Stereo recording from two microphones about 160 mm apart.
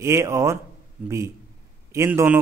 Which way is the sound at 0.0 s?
15° right (ahead or behind).